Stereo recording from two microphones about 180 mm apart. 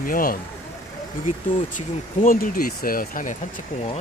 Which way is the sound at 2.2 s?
50° left (ahead or behind).